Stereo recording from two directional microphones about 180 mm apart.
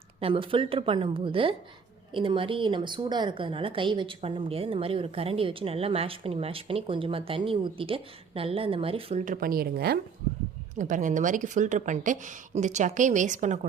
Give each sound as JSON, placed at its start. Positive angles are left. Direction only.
{"t": 0.2, "sound": "a woman's voice", "side_deg": -30}
{"t": 9.2, "sound": "speech", "side_deg": -50}
{"t": 10.8, "sound": "a woman's voice", "side_deg": -45}